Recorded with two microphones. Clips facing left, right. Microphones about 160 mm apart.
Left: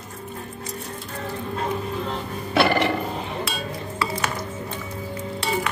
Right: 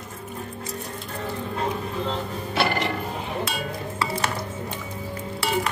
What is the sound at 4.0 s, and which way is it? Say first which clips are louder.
Dishes: even; 25° right (ahead or behind).